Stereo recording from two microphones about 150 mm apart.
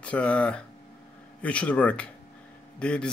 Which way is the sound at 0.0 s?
10° left (ahead or behind).